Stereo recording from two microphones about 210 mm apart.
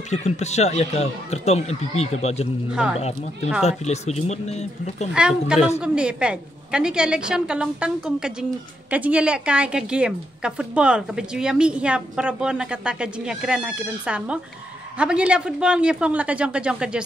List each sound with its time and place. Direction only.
0.1 s speech: 35° left (ahead or behind)
2.7 s a woman's voice: 5° right (ahead or behind)
3.0 s speech: 30° left (ahead or behind)
5.1 s a woman's voice: 5° right (ahead or behind)